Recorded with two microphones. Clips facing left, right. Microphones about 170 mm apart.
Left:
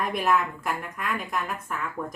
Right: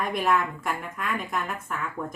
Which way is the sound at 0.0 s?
Centre (ahead or behind).